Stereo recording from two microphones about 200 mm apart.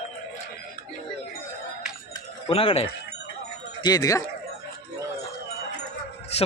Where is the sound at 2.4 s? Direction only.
30° left (ahead or behind).